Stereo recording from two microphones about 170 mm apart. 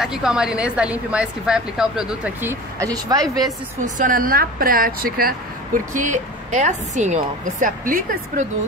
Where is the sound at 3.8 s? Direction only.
50° right (ahead or behind).